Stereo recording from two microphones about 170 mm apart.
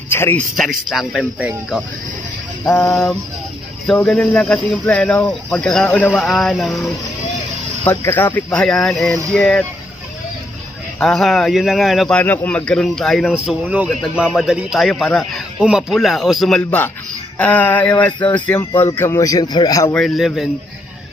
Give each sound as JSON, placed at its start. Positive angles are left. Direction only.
{"t": 0.1, "sound": "speech", "side_deg": 10}
{"t": 0.7, "sound": "speech", "side_deg": 0}
{"t": 2.6, "sound": "speech", "side_deg": 15}
{"t": 2.9, "sound": "speech", "side_deg": 0}
{"t": 7.8, "sound": "speech", "side_deg": 15}
{"t": 11.0, "sound": "a man's voice", "side_deg": 5}
{"t": 19.9, "sound": "speech", "side_deg": 0}